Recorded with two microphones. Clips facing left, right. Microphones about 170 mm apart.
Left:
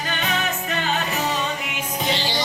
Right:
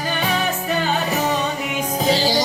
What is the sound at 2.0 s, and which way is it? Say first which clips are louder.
Music: right 7 dB; 40° right (ahead or behind).